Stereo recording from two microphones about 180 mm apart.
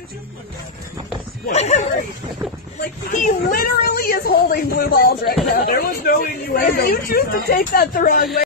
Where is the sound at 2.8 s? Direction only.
50° left (ahead or behind).